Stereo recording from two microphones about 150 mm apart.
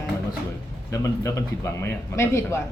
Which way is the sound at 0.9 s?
20° left (ahead or behind).